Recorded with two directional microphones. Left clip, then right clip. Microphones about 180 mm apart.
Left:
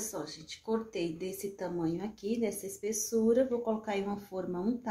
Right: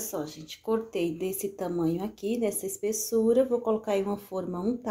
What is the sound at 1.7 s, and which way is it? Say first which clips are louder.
Speech: right 7 dB; 20° right (ahead or behind).